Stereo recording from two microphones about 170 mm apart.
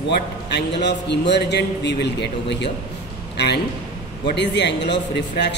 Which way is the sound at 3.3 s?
75° left (ahead or behind).